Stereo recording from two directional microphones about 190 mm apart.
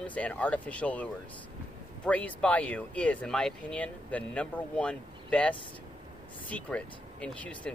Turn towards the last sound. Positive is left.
turn(degrees=5)  # may be behind; listen again after turning